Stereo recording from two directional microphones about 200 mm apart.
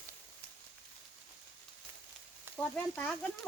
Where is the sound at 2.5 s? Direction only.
5° left (ahead or behind).